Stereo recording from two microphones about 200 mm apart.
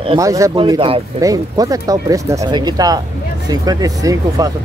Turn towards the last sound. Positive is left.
turn(degrees=-15)  # may be behind; listen again after turning